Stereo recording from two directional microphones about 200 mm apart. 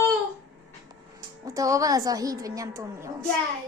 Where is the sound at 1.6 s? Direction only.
15° right (ahead or behind).